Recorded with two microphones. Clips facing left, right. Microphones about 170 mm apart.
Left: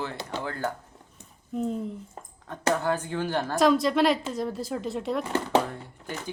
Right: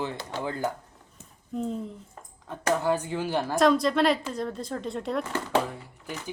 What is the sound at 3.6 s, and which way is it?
Speech, centre (ahead or behind).